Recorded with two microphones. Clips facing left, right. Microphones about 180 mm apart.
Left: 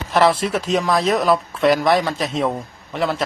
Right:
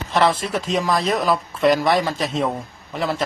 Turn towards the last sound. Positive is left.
turn(degrees=0)  # may be behind; listen again after turning